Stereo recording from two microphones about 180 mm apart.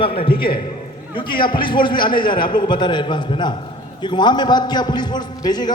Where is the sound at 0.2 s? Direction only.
30° left (ahead or behind).